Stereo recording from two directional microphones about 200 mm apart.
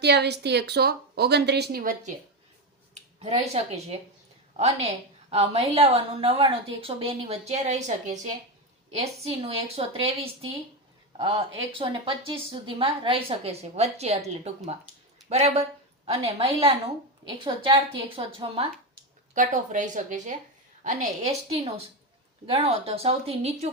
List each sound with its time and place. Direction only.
0.0 s a woman's voice: 55° right (ahead or behind)
2.9 s a woman's voice: 30° right (ahead or behind)
19.3 s a woman's voice: 40° right (ahead or behind)